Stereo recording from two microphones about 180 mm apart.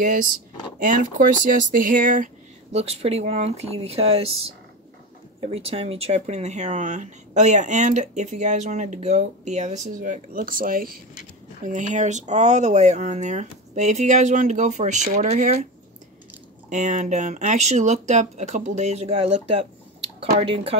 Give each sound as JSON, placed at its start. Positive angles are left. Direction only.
{"t": 0.0, "sound": "speech", "side_deg": -45}
{"t": 5.5, "sound": "speech", "side_deg": -35}
{"t": 16.6, "sound": "speech", "side_deg": -40}